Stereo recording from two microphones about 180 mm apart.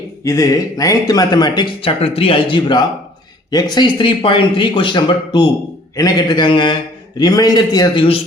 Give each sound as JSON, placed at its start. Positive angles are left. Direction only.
{"t": 0.3, "sound": "speech", "side_deg": 20}